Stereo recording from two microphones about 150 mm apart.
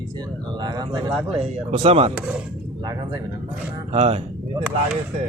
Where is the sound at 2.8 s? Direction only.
25° right (ahead or behind).